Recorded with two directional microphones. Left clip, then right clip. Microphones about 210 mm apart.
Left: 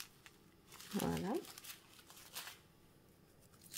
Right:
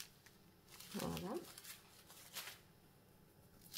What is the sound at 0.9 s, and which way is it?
Crumpling, 20° left (ahead or behind).